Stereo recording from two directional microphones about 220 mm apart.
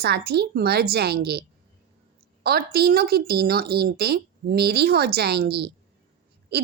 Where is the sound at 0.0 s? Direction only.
45° right (ahead or behind).